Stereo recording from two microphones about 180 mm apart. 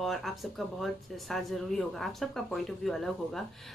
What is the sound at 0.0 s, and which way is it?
Speech, centre (ahead or behind).